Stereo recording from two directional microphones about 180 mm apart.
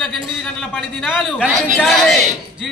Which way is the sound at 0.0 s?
Centre (ahead or behind).